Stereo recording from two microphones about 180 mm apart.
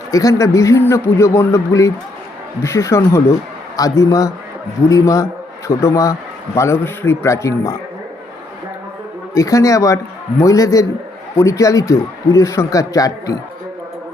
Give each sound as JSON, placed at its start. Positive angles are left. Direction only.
{"t": 0.1, "sound": "a man's voice", "side_deg": 20}
{"t": 9.3, "sound": "a man's voice", "side_deg": 20}